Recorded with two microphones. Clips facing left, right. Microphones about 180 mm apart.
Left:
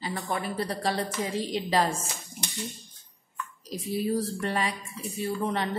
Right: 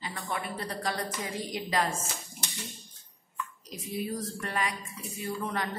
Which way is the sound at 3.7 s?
30° left (ahead or behind).